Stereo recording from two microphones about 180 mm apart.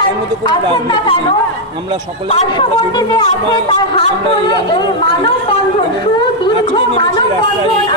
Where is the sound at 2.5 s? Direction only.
25° left (ahead or behind).